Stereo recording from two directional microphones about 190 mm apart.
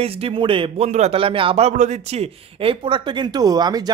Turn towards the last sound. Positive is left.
turn(degrees=-20)  # may be behind; listen again after turning